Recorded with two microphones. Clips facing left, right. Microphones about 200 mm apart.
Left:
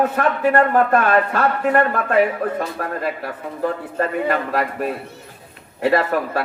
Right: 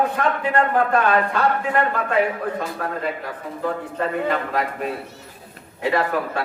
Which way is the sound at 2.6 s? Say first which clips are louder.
Left 2 dB; 35° left (ahead or behind).